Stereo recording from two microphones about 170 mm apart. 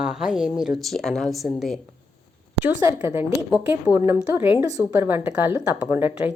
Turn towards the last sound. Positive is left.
turn(degrees=-10)  # may be behind; listen again after turning